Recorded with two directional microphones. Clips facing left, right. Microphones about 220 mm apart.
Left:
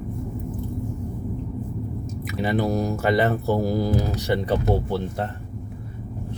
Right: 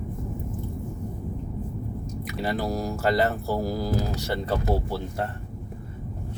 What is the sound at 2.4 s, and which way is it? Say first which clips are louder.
Speech: left 5 dB; 20° left (ahead or behind).